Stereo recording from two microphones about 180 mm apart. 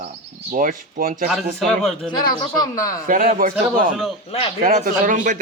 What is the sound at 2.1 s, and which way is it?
Speech, 25° left (ahead or behind).